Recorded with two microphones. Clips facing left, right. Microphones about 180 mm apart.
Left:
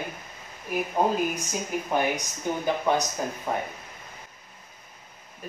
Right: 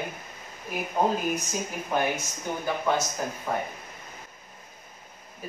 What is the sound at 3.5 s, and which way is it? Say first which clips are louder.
Speech: even; 15° left (ahead or behind).